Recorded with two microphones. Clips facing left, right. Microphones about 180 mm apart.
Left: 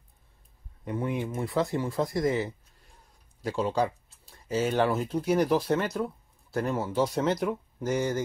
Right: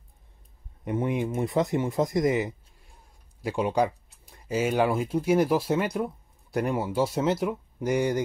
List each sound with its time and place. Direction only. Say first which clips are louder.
0.8 s speech: right 3 dB; 20° right (ahead or behind)